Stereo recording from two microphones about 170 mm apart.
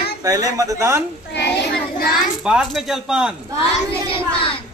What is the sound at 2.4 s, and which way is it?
Speech, 5° right (ahead or behind).